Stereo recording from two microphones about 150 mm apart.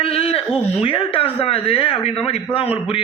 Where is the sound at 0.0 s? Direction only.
40° left (ahead or behind).